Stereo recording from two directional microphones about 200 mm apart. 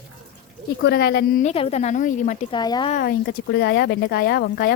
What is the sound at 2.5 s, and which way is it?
Speech, 20° left (ahead or behind).